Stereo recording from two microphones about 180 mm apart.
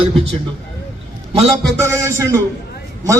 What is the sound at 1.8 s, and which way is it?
Speech, 15° right (ahead or behind).